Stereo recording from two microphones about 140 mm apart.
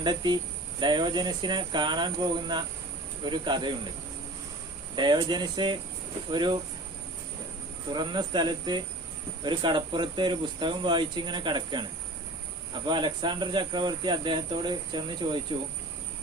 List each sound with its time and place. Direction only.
0.0 s speech: 30° right (ahead or behind)
4.9 s speech: 30° right (ahead or behind)
7.9 s speech: 30° right (ahead or behind)